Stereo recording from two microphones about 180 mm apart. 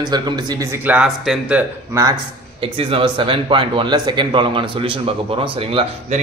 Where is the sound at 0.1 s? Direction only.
20° right (ahead or behind); by 1.6 s centre (ahead or behind).